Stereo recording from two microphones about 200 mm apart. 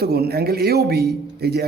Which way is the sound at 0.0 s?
50° right (ahead or behind).